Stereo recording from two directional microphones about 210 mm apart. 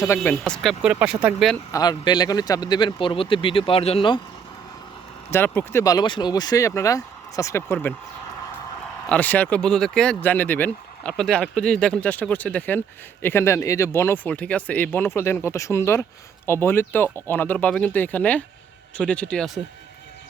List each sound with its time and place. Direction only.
0.1 s speech: 10° left (ahead or behind)
1.7 s a man's voice: 20° left (ahead or behind)
5.3 s speech: 10° left (ahead or behind)